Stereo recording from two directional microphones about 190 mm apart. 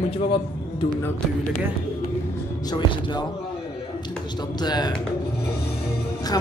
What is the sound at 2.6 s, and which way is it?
Speech, 25° left (ahead or behind).